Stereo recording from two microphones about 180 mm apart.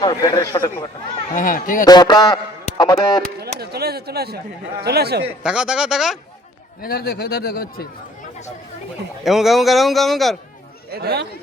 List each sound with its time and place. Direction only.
0.0 s a man's voice: 25° left (ahead or behind)
1.1 s speech: 45° left (ahead or behind)
1.8 s a man's voice: 20° left (ahead or behind)
3.4 s a sound: 60° right (ahead or behind)
4.8 s speech: 60° right (ahead or behind)
5.4 s a man's voice: 5° right (ahead or behind)
6.8 s speech: 60° left (ahead or behind)
9.2 s a man's voice: centre (ahead or behind)
10.9 s speech: 60° right (ahead or behind)